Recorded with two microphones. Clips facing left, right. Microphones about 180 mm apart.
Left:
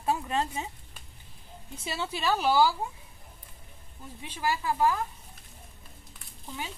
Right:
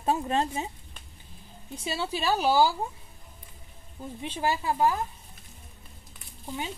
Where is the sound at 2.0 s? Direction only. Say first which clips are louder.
Right 2 dB; 35° right (ahead or behind).